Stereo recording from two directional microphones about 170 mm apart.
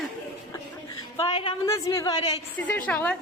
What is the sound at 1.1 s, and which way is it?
Speech, 30° left (ahead or behind).